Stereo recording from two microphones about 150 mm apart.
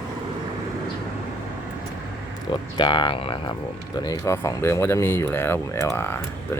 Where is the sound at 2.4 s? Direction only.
30° left (ahead or behind); by 6.5 s 15° left (ahead or behind).